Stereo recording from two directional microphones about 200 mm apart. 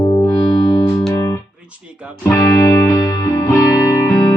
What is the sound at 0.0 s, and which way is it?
Music, 20° left (ahead or behind).